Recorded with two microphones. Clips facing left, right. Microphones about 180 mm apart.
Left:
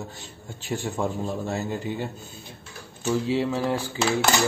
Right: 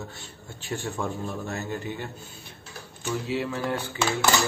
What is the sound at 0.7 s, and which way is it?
Cutlery, 20° left (ahead or behind).